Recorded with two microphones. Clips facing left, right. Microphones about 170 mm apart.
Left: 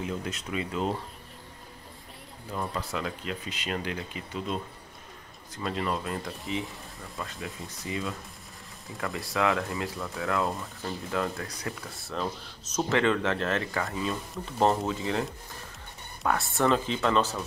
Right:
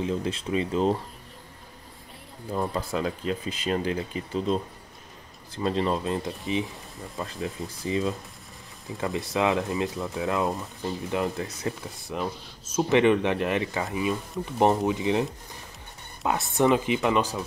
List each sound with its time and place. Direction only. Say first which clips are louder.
0.0 s speech: right 6 dB; 30° right (ahead or behind)
2.5 s speech: right 5 dB; 30° right (ahead or behind)